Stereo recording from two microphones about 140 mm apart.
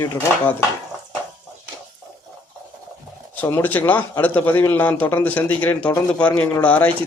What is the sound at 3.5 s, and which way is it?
Speech, 10° left (ahead or behind).